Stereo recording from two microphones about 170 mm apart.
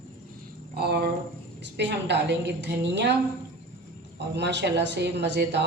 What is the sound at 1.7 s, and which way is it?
Speech, 90° right.